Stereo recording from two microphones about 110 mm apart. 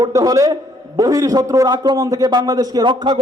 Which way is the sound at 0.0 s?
30° right (ahead or behind).